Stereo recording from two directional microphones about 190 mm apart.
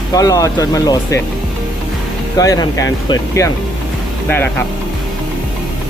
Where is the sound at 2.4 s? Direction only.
20° left (ahead or behind).